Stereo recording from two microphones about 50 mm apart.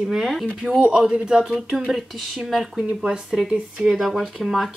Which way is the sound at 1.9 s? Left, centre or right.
Centre.